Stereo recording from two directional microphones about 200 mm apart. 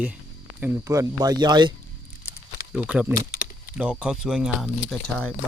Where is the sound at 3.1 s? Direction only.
40° left (ahead or behind).